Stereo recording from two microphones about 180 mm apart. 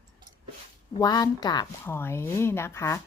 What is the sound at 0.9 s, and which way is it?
Speech, 20° left (ahead or behind).